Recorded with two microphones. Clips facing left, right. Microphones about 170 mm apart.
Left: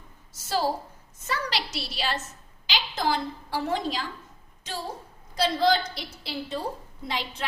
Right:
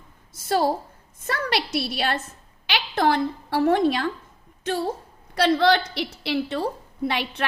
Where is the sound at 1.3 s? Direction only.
55° right (ahead or behind).